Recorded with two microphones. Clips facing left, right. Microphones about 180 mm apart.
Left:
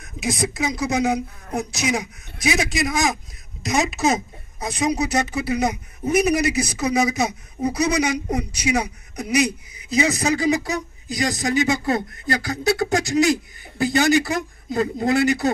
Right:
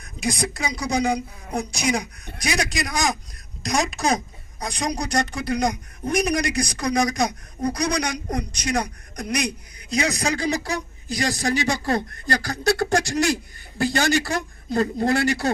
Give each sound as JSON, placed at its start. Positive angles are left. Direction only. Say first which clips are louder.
{"t": 0.0, "sound": "speech", "louder": "left 1 dB", "side_deg": 0}
{"t": 12.4, "sound": "a sound", "louder": "even", "side_deg": 20}
{"t": 13.1, "sound": "speech", "louder": "left 4 dB", "side_deg": 0}